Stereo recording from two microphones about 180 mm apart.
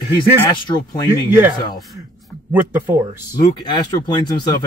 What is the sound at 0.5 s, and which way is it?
Speech, 25° left (ahead or behind).